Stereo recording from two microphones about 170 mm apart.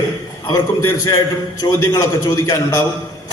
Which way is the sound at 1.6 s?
20° left (ahead or behind).